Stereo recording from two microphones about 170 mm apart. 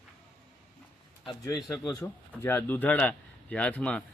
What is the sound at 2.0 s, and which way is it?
Speech, 10° left (ahead or behind).